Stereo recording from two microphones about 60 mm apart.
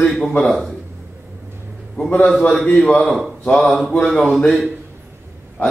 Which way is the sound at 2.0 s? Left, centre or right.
Left.